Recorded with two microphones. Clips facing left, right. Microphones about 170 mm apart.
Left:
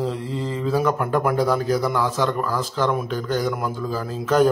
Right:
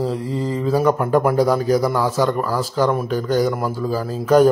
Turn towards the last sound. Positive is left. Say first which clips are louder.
# right 4 dB
turn(degrees=-10)  # may be behind; listen again after turning